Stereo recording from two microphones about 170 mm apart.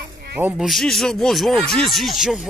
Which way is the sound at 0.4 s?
5° right (ahead or behind).